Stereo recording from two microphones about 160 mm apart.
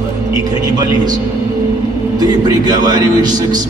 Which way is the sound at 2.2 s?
25° right (ahead or behind).